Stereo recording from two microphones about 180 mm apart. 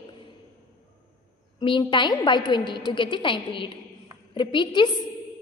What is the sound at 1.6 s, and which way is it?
A woman's voice, 25° left (ahead or behind).